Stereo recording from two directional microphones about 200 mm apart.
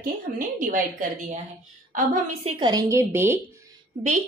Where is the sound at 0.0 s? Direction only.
45° right (ahead or behind).